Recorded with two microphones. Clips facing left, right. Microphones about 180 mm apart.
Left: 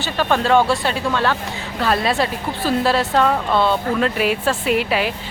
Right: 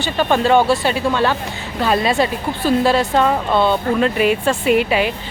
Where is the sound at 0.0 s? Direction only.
Centre (ahead or behind).